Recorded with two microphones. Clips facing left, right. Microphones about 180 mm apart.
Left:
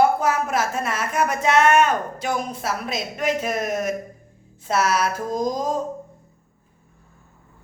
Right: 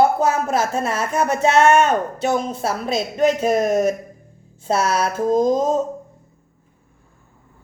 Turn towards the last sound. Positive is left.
turn(degrees=-25)  # may be behind; listen again after turning